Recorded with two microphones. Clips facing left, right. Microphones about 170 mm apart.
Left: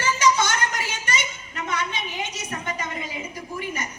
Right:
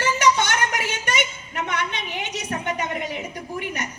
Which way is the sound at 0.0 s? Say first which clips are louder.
Right 1 dB; 65° right (ahead or behind).